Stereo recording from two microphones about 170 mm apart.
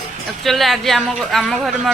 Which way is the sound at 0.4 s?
Centre (ahead or behind).